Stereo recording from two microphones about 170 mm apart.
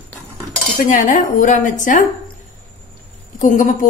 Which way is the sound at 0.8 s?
50° left (ahead or behind).